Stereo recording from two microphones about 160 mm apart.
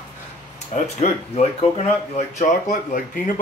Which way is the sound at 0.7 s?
45° left (ahead or behind).